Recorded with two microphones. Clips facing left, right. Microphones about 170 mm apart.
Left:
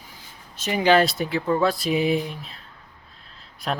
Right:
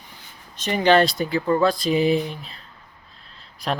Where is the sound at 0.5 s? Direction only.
5° left (ahead or behind).